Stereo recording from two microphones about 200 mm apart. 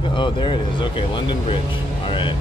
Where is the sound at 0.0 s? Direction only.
25° left (ahead or behind).